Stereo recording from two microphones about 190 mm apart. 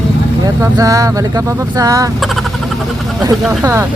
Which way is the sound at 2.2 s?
Centre (ahead or behind).